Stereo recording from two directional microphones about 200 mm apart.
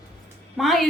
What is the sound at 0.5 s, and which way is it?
Speech, centre (ahead or behind).